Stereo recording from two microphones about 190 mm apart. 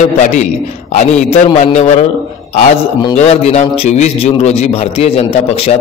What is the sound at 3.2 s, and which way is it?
A man's voice, 35° left (ahead or behind).